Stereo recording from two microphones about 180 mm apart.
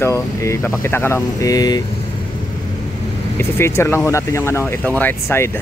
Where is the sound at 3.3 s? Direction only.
15° left (ahead or behind).